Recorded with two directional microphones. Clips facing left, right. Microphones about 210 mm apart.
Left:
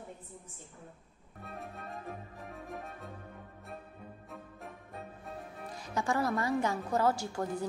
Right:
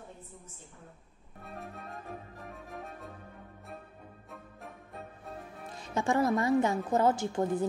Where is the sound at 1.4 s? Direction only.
Centre (ahead or behind).